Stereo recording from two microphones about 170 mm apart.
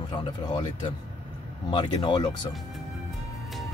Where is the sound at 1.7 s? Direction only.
25° left (ahead or behind).